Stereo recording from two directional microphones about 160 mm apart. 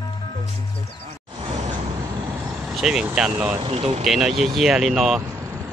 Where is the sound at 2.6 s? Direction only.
5° right (ahead or behind).